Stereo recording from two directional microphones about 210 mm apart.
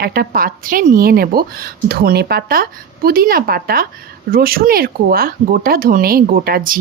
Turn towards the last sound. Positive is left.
turn(degrees=-45)  # may be behind; listen again after turning